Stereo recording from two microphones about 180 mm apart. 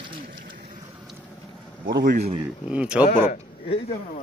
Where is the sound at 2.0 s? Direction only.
45° right (ahead or behind).